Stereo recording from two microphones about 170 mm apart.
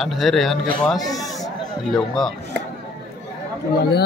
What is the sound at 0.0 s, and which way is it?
Speech, centre (ahead or behind).